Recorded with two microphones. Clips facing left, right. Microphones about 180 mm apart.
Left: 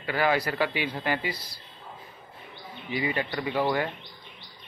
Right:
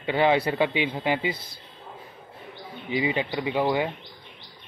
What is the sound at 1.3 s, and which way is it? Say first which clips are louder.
Speech: right 1 dB; 55° right (ahead or behind).